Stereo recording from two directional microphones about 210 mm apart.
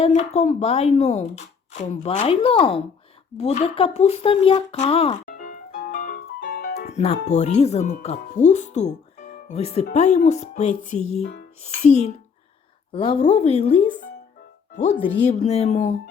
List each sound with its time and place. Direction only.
0.0 s speech: 30° left (ahead or behind)
3.3 s a sound: 30° left (ahead or behind); by 6.8 s 45° left (ahead or behind)
6.8 s speech: 30° left (ahead or behind)
15.2 s speech: 30° left (ahead or behind)